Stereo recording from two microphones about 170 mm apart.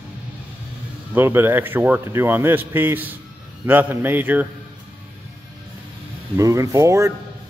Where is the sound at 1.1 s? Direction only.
15° right (ahead or behind).